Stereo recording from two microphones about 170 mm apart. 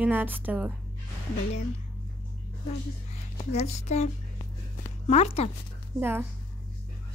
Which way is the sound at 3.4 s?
40° left (ahead or behind).